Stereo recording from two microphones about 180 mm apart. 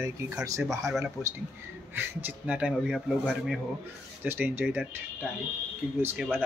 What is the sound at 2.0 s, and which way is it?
Speech, 10° right (ahead or behind).